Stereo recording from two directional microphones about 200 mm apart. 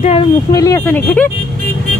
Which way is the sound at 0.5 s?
15° left (ahead or behind).